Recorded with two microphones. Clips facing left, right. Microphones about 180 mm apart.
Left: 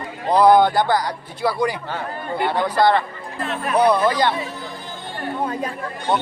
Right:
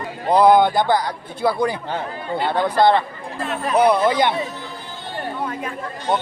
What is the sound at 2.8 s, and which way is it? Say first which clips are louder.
Speech: right 1 dB; 20° right (ahead or behind).